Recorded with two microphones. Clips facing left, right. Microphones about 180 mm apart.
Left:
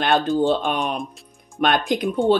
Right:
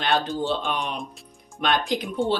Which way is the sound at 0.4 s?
50° left (ahead or behind).